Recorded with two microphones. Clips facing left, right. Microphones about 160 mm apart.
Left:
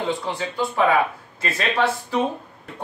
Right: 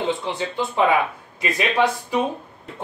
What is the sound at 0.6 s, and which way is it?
A man's voice, 20° right (ahead or behind).